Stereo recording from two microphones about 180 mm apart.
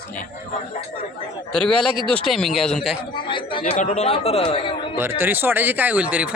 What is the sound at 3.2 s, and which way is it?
Speech, 25° left (ahead or behind).